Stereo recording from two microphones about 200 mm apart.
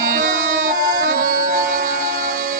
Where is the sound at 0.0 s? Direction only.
40° right (ahead or behind).